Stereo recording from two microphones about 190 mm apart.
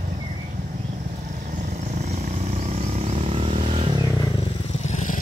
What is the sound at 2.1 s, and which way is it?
Vehicle, 35° right (ahead or behind).